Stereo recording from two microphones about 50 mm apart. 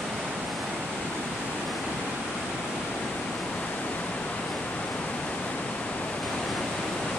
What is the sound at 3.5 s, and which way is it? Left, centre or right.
Pink noise, left.